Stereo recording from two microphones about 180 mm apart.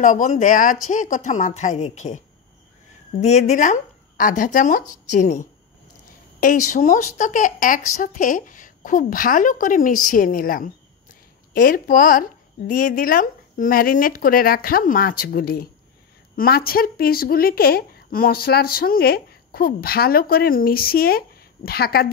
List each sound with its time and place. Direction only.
0.0 s a woman's voice: 45° left (ahead or behind)